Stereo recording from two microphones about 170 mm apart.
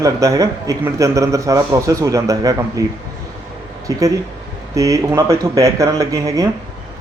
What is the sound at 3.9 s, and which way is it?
Speech, 20° right (ahead or behind).